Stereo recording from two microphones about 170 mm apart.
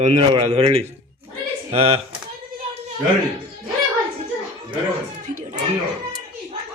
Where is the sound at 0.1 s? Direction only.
30° right (ahead or behind).